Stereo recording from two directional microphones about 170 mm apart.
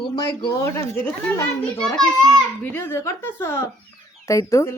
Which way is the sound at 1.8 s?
5° left (ahead or behind).